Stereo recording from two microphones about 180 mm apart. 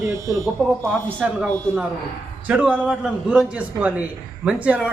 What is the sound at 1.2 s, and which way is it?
A woman's voice, 5° right (ahead or behind).